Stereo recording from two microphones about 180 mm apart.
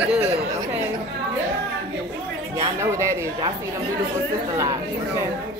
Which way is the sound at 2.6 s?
15° right (ahead or behind).